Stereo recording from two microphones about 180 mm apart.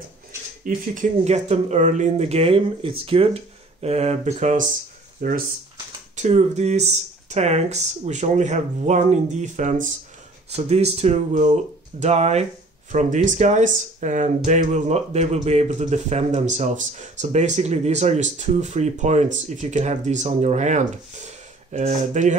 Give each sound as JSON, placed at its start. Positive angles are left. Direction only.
{"t": 0.7, "sound": "speech", "side_deg": -45}
{"t": 6.1, "sound": "speech", "side_deg": -40}